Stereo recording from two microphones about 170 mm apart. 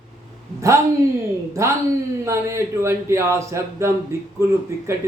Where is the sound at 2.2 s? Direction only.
15° right (ahead or behind).